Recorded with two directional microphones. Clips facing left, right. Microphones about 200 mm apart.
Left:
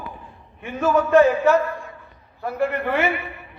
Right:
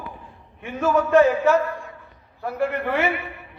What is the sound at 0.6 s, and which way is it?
A man's voice, 45° left (ahead or behind).